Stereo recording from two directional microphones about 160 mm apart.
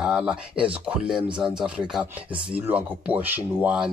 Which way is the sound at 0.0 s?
5° right (ahead or behind).